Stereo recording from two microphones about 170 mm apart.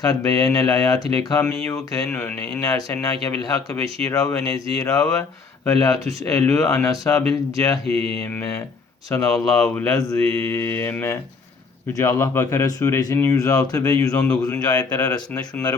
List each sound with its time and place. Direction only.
0.0 s speech: 20° left (ahead or behind)
7.1 s speech: 5° left (ahead or behind)
7.9 s mantra: 35° right (ahead or behind)
8.2 s speech: 10° left (ahead or behind)
9.6 s speech: 15° left (ahead or behind)